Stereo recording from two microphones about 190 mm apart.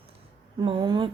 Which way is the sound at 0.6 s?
25° right (ahead or behind).